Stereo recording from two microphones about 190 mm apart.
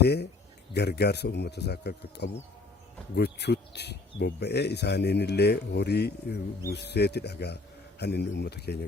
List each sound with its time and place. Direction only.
0.0 s speech: 60° left (ahead or behind)